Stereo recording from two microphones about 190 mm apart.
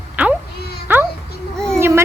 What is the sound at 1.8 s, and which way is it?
Speech, 15° right (ahead or behind).